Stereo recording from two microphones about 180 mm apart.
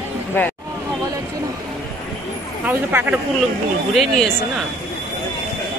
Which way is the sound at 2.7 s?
10° right (ahead or behind).